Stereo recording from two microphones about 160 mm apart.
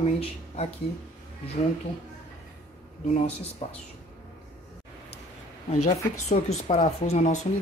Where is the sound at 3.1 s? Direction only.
40° left (ahead or behind).